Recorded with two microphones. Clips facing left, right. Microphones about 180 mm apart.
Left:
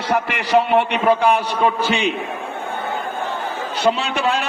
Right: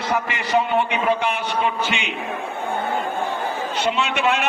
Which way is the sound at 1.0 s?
35° left (ahead or behind).